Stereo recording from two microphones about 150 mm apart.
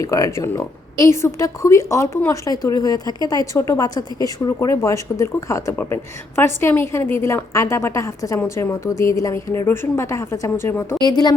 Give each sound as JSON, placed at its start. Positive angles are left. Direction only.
{"t": 0.0, "sound": "speech", "side_deg": 20}
{"t": 11.0, "sound": "speech", "side_deg": 25}